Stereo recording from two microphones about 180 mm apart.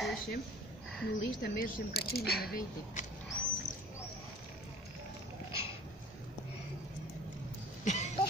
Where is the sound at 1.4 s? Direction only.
55° left (ahead or behind).